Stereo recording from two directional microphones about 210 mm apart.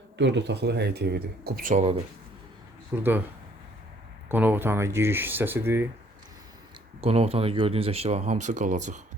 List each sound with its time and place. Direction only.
0.2 s speech: 55° right (ahead or behind); by 2.0 s 35° right (ahead or behind)
2.9 s speech: 10° right (ahead or behind)
4.3 s speech: 10° right (ahead or behind)
7.0 s speech: 30° right (ahead or behind)